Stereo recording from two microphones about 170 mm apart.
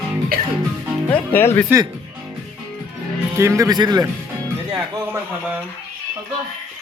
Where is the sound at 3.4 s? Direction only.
15° right (ahead or behind).